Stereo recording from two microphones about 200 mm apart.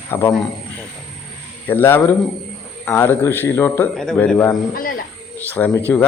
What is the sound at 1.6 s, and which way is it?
A man's voice, 10° left (ahead or behind).